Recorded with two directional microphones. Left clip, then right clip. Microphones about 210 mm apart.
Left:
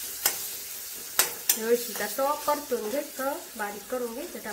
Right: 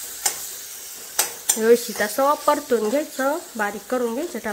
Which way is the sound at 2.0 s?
50° right (ahead or behind).